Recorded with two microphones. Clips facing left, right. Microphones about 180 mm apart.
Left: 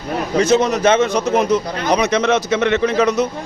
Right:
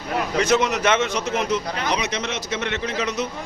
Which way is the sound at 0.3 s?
35° left (ahead or behind).